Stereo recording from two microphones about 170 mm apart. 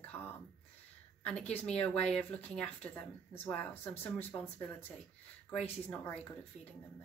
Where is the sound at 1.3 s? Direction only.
5° left (ahead or behind).